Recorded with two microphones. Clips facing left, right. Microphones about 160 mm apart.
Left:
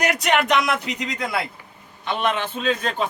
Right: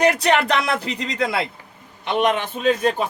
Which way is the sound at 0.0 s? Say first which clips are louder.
Right 3 dB; 30° right (ahead or behind).